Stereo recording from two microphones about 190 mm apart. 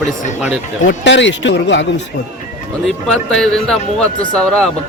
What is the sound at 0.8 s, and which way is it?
Speech, 70° left (ahead or behind).